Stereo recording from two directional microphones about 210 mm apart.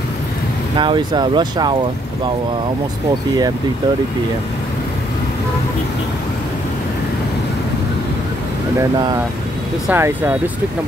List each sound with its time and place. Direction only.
0.7 s speech: 20° right (ahead or behind)
9.8 s speech: 10° right (ahead or behind)